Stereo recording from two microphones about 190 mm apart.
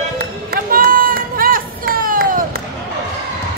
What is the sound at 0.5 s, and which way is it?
Run, 50° right (ahead or behind).